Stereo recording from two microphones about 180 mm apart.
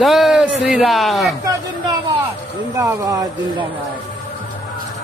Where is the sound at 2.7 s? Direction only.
20° right (ahead or behind).